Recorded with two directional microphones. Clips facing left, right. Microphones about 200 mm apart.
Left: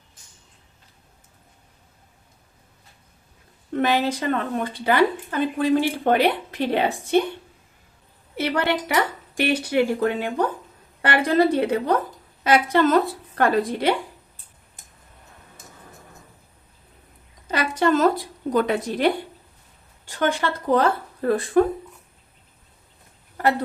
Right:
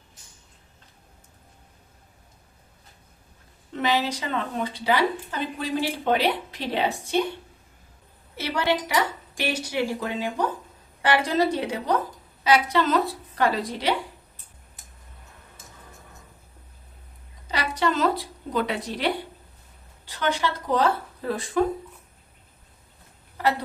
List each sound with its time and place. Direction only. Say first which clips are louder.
3.7 s speech: left 4 dB; 55° left (ahead or behind)
8.4 s speech: left 2 dB; 55° left (ahead or behind)
17.5 s a woman's voice: left 5 dB; 50° left (ahead or behind)